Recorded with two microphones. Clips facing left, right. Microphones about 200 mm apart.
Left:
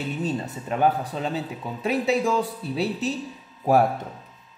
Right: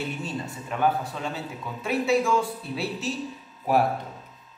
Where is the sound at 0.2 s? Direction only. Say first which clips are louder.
Left 5 dB; 35° left (ahead or behind).